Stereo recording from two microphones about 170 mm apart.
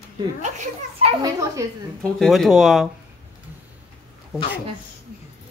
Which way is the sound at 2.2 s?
Centre (ahead or behind).